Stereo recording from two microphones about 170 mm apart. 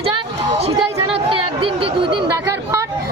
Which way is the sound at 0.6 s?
35° right (ahead or behind).